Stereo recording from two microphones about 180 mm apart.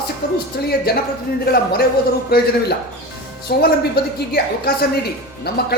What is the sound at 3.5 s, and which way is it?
A woman's voice, 60° left (ahead or behind).